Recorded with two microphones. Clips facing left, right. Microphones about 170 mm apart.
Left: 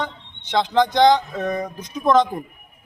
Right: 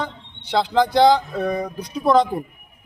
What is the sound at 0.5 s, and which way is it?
Speech, 5° right (ahead or behind).